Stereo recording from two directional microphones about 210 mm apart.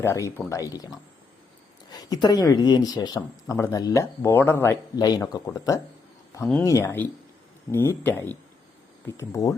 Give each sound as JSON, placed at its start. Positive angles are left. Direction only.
{"t": 0.0, "sound": "speech", "side_deg": 15}
{"t": 6.4, "sound": "speech", "side_deg": 0}
{"t": 6.7, "sound": "speech", "side_deg": 15}